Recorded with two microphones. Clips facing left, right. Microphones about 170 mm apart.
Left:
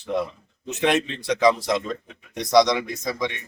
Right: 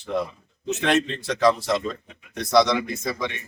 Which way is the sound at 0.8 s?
10° left (ahead or behind).